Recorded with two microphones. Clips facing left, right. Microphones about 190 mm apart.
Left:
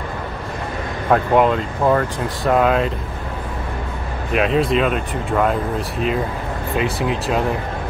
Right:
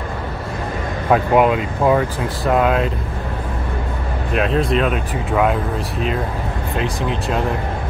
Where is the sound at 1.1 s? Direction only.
5° right (ahead or behind).